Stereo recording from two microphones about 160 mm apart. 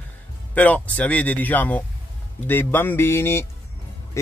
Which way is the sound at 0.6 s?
10° left (ahead or behind).